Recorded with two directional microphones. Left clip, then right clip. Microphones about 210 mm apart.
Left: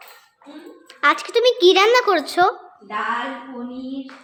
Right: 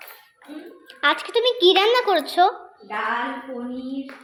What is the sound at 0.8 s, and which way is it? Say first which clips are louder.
A child's voice: left 3 dB; 10° left (ahead or behind).